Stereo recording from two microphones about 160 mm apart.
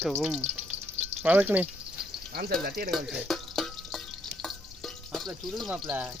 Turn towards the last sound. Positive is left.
turn(degrees=0)  # may be behind; listen again after turning